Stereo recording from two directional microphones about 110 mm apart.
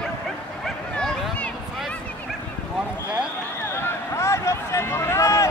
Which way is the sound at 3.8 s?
25° left (ahead or behind).